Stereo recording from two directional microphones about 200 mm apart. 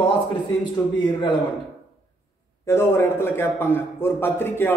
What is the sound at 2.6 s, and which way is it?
A man's voice, 10° left (ahead or behind).